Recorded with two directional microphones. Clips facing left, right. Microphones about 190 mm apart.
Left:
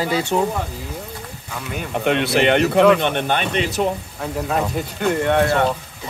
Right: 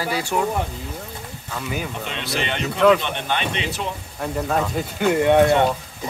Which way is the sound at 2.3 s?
60° left (ahead or behind).